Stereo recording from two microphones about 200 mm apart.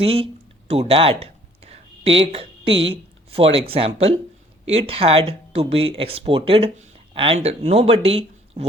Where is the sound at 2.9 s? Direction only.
30° right (ahead or behind).